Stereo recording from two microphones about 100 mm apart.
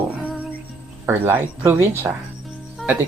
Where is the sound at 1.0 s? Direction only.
20° right (ahead or behind).